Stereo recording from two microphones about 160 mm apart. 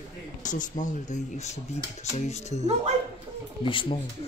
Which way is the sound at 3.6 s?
35° left (ahead or behind).